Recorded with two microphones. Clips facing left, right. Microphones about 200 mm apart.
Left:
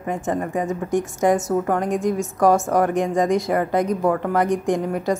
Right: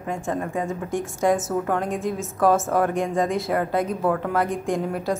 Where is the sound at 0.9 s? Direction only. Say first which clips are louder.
Left 3 dB; 20° left (ahead or behind).